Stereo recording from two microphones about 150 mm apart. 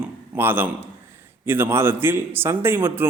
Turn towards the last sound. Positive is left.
turn(degrees=-15)  # may be behind; listen again after turning